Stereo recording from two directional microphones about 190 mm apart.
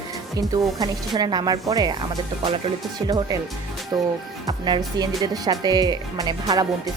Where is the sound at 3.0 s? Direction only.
20° right (ahead or behind).